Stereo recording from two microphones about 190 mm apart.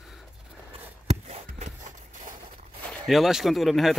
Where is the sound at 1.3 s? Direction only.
40° right (ahead or behind).